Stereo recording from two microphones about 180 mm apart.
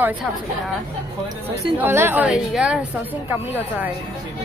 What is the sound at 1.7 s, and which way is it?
A woman's voice, 10° right (ahead or behind).